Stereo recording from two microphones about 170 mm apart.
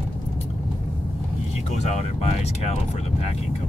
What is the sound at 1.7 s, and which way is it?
Speech, 40° left (ahead or behind).